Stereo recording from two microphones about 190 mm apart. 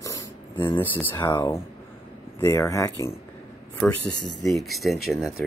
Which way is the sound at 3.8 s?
5° left (ahead or behind).